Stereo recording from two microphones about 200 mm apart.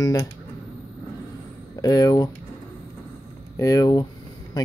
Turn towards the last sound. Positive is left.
turn(degrees=20)  # may be behind; listen again after turning